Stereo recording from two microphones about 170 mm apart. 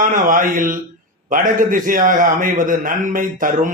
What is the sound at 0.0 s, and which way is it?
Speech, 55° right (ahead or behind).